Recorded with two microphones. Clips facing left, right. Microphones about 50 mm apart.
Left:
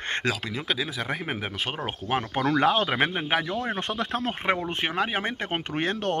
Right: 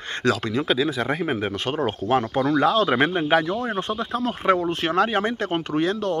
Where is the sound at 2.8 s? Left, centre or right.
Centre.